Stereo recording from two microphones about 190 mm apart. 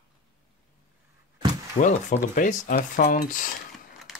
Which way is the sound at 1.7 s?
40° left (ahead or behind).